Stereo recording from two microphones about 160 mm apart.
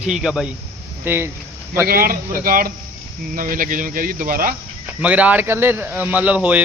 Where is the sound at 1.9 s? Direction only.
65° right (ahead or behind).